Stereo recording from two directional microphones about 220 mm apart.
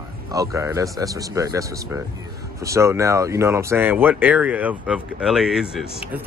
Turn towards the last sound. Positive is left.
turn(degrees=0)  # may be behind; listen again after turning